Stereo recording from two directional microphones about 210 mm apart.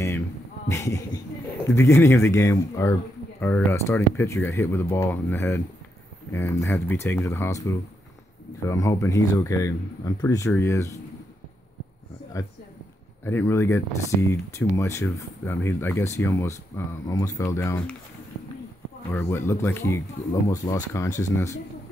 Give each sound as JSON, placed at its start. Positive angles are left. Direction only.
{"t": 0.7, "sound": "speech", "side_deg": 15}
{"t": 13.2, "sound": "speech", "side_deg": 10}
{"t": 19.0, "sound": "speech", "side_deg": 10}